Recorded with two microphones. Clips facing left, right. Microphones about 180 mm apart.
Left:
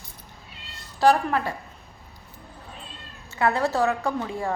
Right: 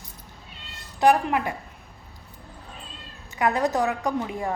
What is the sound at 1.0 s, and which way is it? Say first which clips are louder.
Speech: even; 15° right (ahead or behind).